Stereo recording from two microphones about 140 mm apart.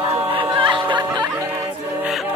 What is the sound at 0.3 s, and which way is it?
Music, 35° right (ahead or behind).